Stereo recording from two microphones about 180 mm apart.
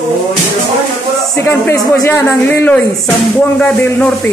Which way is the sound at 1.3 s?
15° left (ahead or behind).